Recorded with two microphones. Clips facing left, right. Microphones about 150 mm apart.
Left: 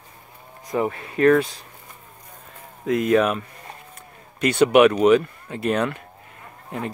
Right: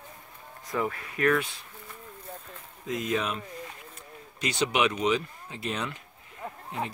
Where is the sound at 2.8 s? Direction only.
65° left (ahead or behind).